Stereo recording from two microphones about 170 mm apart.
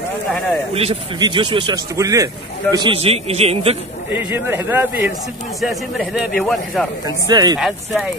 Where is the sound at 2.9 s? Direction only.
35° right (ahead or behind).